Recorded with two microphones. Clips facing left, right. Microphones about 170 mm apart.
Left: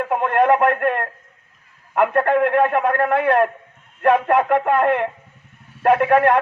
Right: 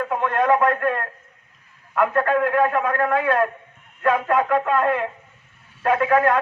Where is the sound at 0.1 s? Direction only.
60° left (ahead or behind).